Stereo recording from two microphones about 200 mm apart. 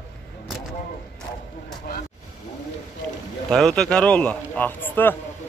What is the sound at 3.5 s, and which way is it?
A man's voice, centre (ahead or behind).